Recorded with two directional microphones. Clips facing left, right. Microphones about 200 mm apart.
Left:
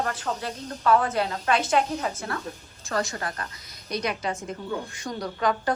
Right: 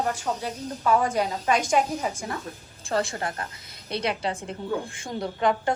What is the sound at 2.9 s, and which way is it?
A woman's voice, 30° right (ahead or behind).